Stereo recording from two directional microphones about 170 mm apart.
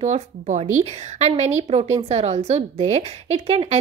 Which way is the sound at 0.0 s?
40° right (ahead or behind).